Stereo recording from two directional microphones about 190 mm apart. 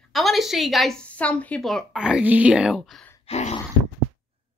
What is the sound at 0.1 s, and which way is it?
Speech, centre (ahead or behind).